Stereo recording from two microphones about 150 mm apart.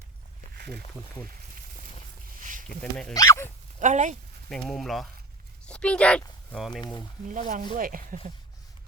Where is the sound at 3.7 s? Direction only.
55° right (ahead or behind).